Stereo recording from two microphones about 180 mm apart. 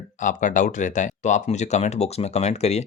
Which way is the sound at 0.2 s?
45° left (ahead or behind).